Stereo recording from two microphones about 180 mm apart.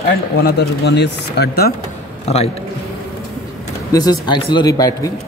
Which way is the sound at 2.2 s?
35° left (ahead or behind).